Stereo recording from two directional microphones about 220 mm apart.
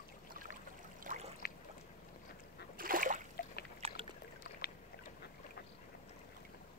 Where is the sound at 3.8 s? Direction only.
25° right (ahead or behind).